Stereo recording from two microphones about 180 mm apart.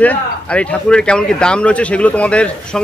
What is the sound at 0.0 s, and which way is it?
Speech, 5° left (ahead or behind).